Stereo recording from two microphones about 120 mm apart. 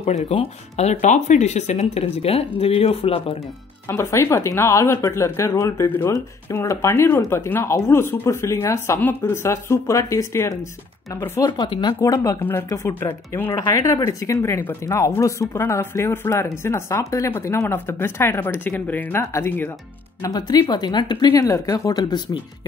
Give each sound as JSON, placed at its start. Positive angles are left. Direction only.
{"t": 0.0, "sound": "speech", "side_deg": 60}
{"t": 3.9, "sound": "a woman's voice", "side_deg": 25}
{"t": 12.0, "sound": "speech", "side_deg": 30}
{"t": 12.4, "sound": "speech", "side_deg": 15}
{"t": 20.2, "sound": "a woman's voice", "side_deg": 35}